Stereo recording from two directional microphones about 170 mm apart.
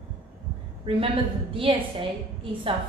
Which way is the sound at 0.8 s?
30° right (ahead or behind).